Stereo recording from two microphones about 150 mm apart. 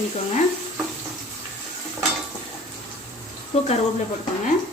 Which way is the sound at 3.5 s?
40° left (ahead or behind).